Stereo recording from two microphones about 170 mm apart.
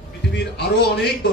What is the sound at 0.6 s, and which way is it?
Speech, 75° left (ahead or behind).